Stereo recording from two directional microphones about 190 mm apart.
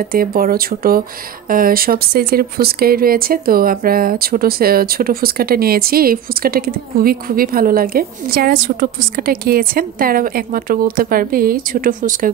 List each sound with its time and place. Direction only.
0.1 s speech: 50° right (ahead or behind)